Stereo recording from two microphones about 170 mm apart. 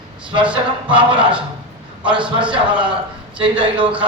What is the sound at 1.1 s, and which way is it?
A man's voice, 5° right (ahead or behind).